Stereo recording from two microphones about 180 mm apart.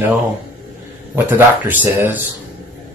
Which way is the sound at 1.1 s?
10° right (ahead or behind).